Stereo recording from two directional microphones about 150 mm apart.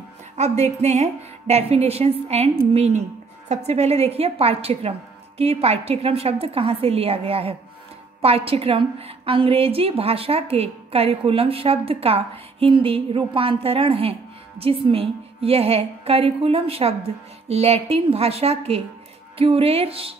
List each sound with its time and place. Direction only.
0.4 s a woman's voice: 50° right (ahead or behind)